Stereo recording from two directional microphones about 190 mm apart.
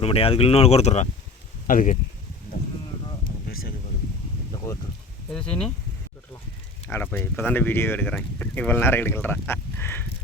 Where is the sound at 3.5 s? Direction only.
50° left (ahead or behind).